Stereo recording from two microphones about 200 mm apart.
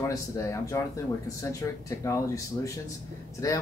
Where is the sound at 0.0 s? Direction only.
15° left (ahead or behind).